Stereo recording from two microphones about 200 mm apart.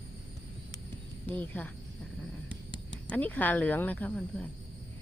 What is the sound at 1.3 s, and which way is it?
Speech, 10° left (ahead or behind).